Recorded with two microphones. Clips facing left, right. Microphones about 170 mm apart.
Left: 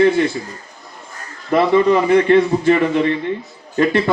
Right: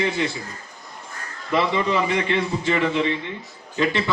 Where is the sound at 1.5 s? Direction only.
50° left (ahead or behind).